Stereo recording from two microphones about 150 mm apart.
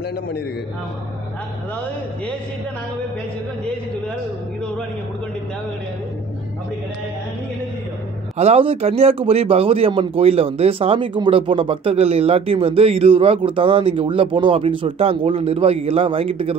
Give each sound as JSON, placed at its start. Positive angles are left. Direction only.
{"t": 8.4, "sound": "speech", "side_deg": -40}